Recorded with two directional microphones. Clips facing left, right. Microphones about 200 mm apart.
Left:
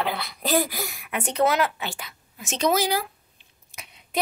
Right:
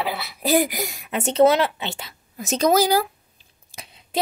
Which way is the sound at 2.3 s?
40° right (ahead or behind).